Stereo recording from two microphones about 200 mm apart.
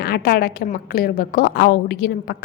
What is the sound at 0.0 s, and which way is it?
A woman's voice, 50° left (ahead or behind).